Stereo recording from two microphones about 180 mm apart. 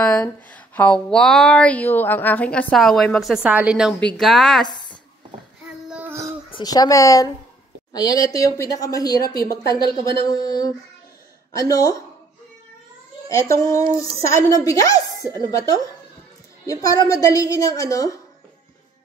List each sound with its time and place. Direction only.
0.0 s speech: 5° left (ahead or behind)
4.6 s a woman's voice: 25° left (ahead or behind)
5.9 s a sound: 10° right (ahead or behind)
6.5 s speech: 20° left (ahead or behind)
13.3 s speech: 15° left (ahead or behind)
16.8 s speech: 20° left (ahead or behind)